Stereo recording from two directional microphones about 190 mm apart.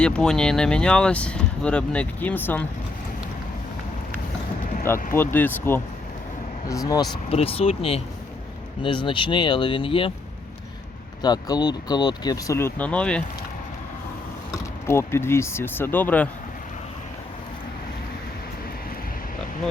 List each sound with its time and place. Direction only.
0.0 s speech: 5° left (ahead or behind)
5.1 s speech: 10° left (ahead or behind)
7.3 s speech: 30° left (ahead or behind)
11.2 s speech: 20° left (ahead or behind)
14.8 s speech: 15° left (ahead or behind)